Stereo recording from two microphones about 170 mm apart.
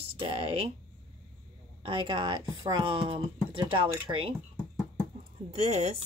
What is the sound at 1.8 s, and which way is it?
Speech, 30° right (ahead or behind).